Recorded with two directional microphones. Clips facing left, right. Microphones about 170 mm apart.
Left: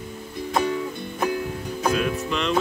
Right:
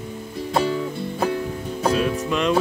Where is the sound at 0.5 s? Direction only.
30° right (ahead or behind).